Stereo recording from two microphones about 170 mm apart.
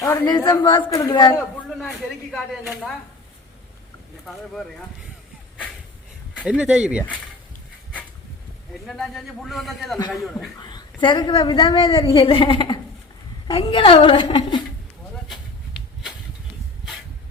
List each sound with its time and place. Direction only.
0.0 s a woman's voice: 25° left (ahead or behind)
1.8 s a man's voice: centre (ahead or behind)
6.4 s a man's voice: 5° right (ahead or behind)
8.9 s a man's voice: centre (ahead or behind)
10.6 s a woman's voice: 25° left (ahead or behind)